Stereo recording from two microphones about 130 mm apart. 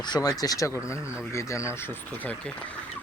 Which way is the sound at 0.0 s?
30° left (ahead or behind).